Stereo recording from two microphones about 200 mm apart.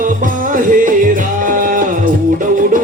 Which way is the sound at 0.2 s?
40° right (ahead or behind).